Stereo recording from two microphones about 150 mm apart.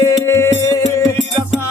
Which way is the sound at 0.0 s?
20° left (ahead or behind).